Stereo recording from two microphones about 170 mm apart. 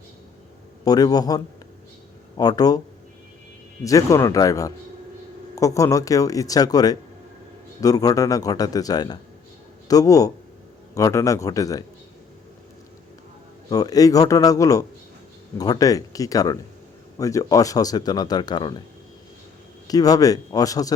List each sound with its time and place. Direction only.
0.9 s speech: 20° left (ahead or behind)
2.4 s speech: 20° left (ahead or behind)
3.8 s speech: 20° left (ahead or behind)
13.7 s speech: 20° left (ahead or behind)
19.9 s speech: 20° left (ahead or behind)